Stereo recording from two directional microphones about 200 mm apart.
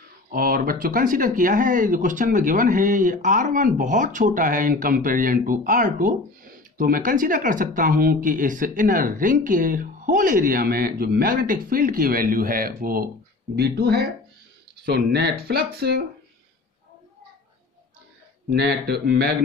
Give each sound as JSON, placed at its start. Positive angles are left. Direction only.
{"t": 0.3, "sound": "speech", "side_deg": -45}
{"t": 18.5, "sound": "speech", "side_deg": -55}